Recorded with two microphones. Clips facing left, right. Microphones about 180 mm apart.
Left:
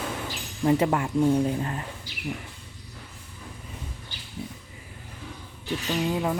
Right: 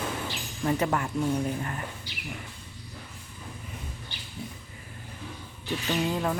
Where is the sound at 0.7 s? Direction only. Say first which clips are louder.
Left 4 dB; 25° left (ahead or behind).